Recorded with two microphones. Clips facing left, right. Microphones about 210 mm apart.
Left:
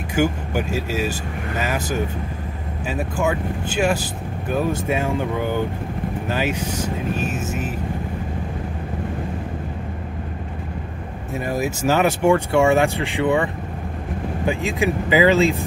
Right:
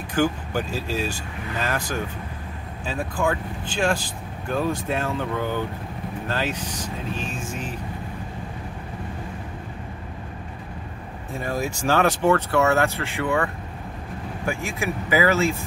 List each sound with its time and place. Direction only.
0.1 s speech: 10° left (ahead or behind)
2.9 s speech: 10° left (ahead or behind)
11.3 s speech: 5° left (ahead or behind)